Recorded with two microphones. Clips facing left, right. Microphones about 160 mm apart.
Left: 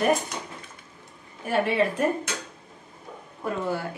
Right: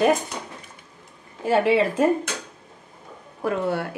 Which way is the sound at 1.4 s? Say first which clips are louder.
Right 4 dB; 90° right.